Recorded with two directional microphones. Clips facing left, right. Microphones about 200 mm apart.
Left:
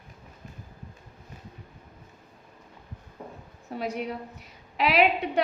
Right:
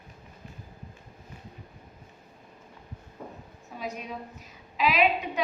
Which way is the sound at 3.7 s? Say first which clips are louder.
Left 5 dB; 65° left (ahead or behind).